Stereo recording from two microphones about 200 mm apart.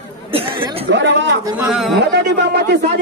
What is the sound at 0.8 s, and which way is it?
Speech, 60° right (ahead or behind).